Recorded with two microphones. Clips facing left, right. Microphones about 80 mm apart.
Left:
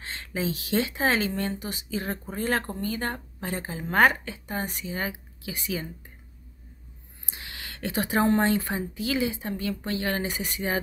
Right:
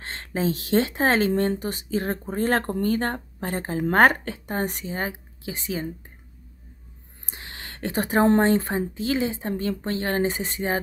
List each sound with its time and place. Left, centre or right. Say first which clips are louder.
0.0 s speech: right 4 dB; right
4.9 s a woman's voice: right 2 dB; right
7.2 s a sound: right 1 dB; right
8.4 s speech: right 4 dB; right